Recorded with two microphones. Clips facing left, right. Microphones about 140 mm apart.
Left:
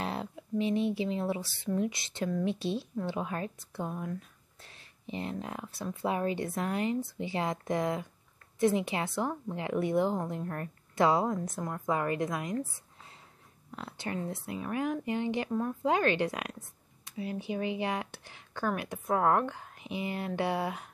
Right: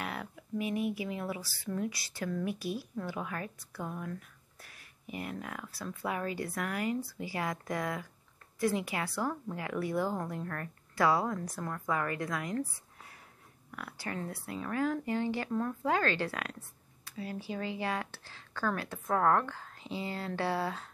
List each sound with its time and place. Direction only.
0.0 s speech: 25° left (ahead or behind)
13.7 s speech: 25° left (ahead or behind)